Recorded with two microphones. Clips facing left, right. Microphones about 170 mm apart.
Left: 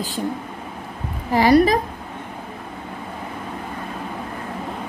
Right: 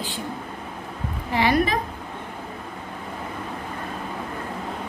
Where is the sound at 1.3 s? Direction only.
40° left (ahead or behind).